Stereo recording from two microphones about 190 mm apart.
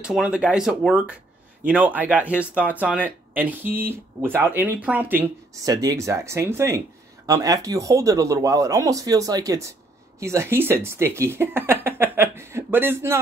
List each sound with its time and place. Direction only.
0.0 s speech: 5° right (ahead or behind)